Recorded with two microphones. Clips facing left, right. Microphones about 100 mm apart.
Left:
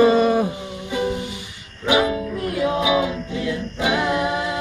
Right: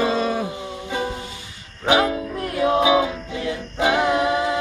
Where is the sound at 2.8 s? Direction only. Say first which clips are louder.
Right 3 dB; 25° right (ahead or behind).